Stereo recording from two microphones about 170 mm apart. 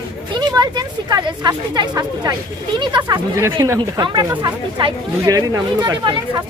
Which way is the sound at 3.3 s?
15° right (ahead or behind).